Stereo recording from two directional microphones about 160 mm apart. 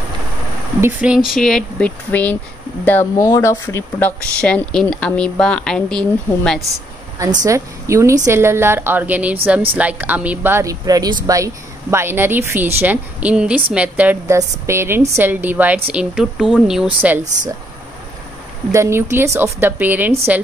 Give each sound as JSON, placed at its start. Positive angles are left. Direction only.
{"t": 0.7, "sound": "speech", "side_deg": -10}
{"t": 7.2, "sound": "a woman's voice", "side_deg": -20}
{"t": 18.7, "sound": "speech", "side_deg": -15}